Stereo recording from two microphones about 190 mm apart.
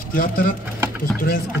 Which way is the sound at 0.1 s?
50° left (ahead or behind).